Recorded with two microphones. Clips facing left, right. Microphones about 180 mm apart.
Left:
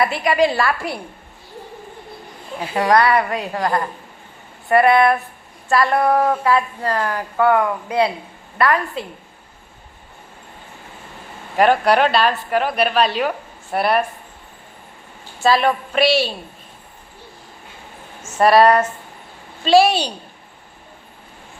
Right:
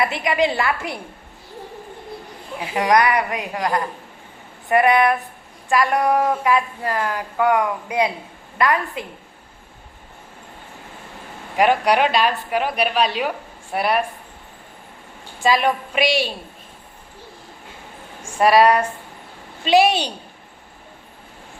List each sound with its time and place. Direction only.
0.0 s a woman's voice: 20° right (ahead or behind)
2.7 s a woman's voice: 15° right (ahead or behind)
11.6 s a woman's voice: 10° right (ahead or behind)
15.4 s a woman's voice: 15° right (ahead or behind)
18.2 s a woman's voice: 15° right (ahead or behind)